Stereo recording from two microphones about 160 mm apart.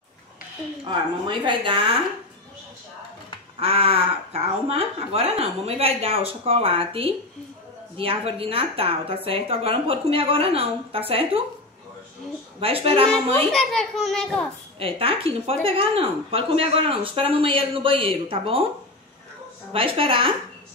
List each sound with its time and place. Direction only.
0.8 s speech: 30° right (ahead or behind)
3.5 s speech: 35° right (ahead or behind)
12.5 s speech: 35° right (ahead or behind)
13.1 s a child's voice: centre (ahead or behind)
14.8 s speech: 35° right (ahead or behind)
19.7 s speech: 35° right (ahead or behind)